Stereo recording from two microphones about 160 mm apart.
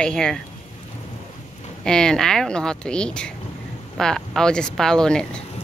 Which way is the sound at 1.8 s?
5° left (ahead or behind).